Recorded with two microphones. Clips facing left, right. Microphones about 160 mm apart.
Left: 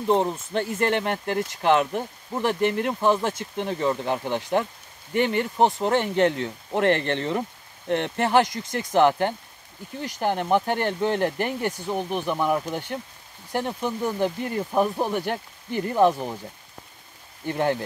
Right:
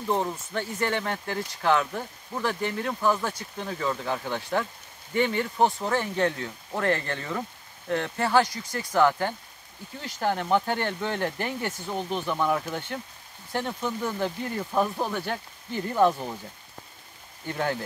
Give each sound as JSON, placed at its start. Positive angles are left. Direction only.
{"t": 0.0, "sound": "speech", "side_deg": 20}
{"t": 17.5, "sound": "speech", "side_deg": 20}